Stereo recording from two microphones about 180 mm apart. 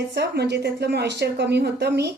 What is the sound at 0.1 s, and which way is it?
A woman's voice, 65° right (ahead or behind).